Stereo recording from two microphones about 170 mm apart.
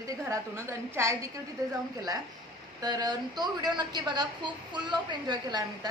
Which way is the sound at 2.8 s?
25° right (ahead or behind).